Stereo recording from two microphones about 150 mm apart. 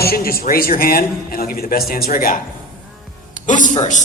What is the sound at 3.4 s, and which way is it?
Speech, 60° left (ahead or behind).